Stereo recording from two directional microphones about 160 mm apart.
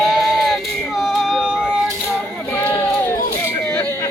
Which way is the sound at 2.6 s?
15° left (ahead or behind).